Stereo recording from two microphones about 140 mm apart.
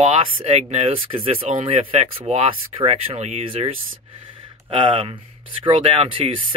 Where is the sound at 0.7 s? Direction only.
45° right (ahead or behind).